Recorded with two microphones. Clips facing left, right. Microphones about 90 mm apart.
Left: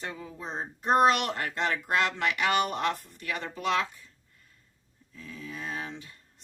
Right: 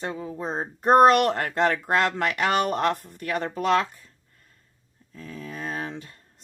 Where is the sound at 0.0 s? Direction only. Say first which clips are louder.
Right 7 dB; 35° right (ahead or behind).